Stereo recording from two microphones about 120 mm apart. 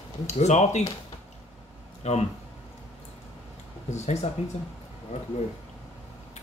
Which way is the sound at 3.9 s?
70° left (ahead or behind).